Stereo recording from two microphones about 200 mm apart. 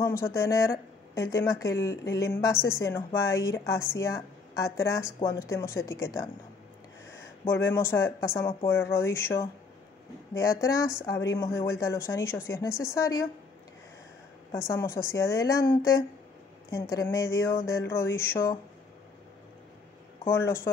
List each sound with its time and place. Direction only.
0.0 s speech: 15° left (ahead or behind)
7.4 s speech: 10° left (ahead or behind)
14.7 s speech: 15° left (ahead or behind)
20.2 s speech: 15° left (ahead or behind)